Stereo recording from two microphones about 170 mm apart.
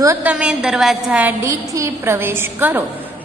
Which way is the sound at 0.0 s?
15° right (ahead or behind).